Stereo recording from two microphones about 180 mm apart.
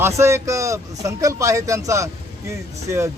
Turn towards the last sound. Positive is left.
turn(degrees=-15)  # may be behind; listen again after turning